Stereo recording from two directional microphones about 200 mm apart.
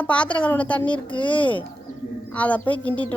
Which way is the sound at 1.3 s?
5° left (ahead or behind).